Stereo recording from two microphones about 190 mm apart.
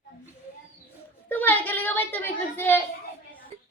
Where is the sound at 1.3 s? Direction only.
10° left (ahead or behind).